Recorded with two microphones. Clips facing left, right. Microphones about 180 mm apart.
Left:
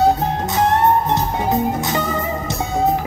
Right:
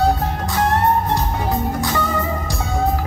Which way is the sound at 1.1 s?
20° left (ahead or behind).